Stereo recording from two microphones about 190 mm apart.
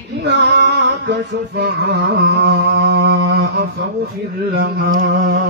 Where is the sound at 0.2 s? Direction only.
70° right (ahead or behind); by 5.4 s 50° right (ahead or behind).